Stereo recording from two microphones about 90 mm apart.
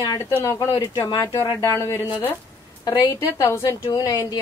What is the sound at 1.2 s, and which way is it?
Speech, 30° left (ahead or behind).